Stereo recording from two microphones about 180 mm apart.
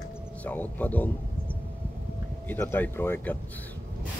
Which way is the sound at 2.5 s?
10° left (ahead or behind).